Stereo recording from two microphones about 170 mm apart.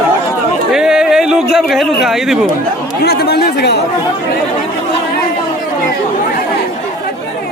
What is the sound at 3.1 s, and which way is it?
Speech, 70° left (ahead or behind).